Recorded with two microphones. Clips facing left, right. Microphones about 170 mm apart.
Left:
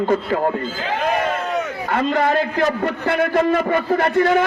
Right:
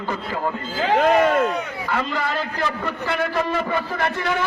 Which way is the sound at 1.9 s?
50° left (ahead or behind).